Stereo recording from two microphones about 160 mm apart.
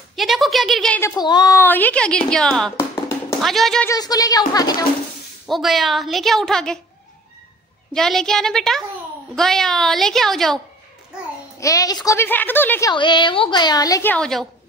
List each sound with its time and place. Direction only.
0.1 s a woman's voice: centre (ahead or behind)
1.0 s a woman's voice: 25° left (ahead or behind)
1.6 s a woman's voice: 10° left (ahead or behind)
3.8 s a woman's voice: 20° left (ahead or behind)
5.5 s a woman's voice: centre (ahead or behind)
7.9 s a woman's voice: 5° left (ahead or behind)
11.6 s a woman's voice: 20° left (ahead or behind)
12.9 s a woman's voice: 30° left (ahead or behind)
14.1 s a woman's voice: 5° left (ahead or behind)